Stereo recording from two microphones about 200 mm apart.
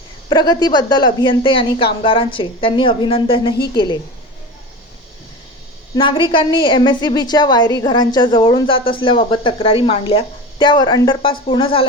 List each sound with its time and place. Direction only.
0.3 s a woman's voice: 20° left (ahead or behind)
5.9 s a woman's voice: 25° left (ahead or behind)